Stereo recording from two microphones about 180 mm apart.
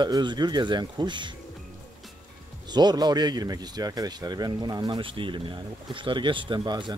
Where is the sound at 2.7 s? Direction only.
25° right (ahead or behind).